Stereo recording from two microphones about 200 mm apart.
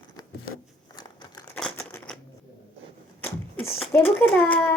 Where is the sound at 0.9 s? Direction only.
20° left (ahead or behind).